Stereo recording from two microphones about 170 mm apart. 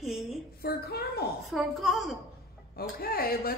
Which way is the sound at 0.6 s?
65° left (ahead or behind).